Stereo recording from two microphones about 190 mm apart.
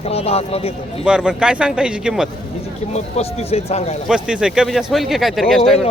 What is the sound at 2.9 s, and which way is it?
Speech, 35° left (ahead or behind).